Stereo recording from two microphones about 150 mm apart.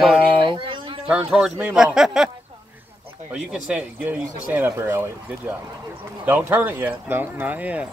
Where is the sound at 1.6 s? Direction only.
5° right (ahead or behind).